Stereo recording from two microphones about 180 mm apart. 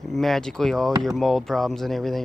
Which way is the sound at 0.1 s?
Centre (ahead or behind).